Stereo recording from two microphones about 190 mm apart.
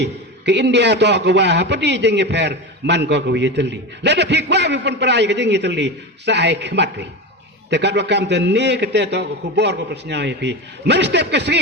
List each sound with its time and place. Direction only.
0.0 s a man's voice: 65° right (ahead or behind)